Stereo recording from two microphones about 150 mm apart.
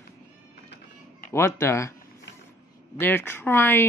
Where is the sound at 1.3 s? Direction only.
15° left (ahead or behind).